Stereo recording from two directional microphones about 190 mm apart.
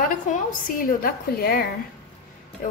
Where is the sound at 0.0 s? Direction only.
45° left (ahead or behind).